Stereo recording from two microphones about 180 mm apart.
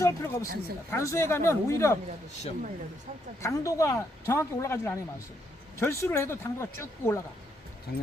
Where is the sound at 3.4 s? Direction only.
15° left (ahead or behind).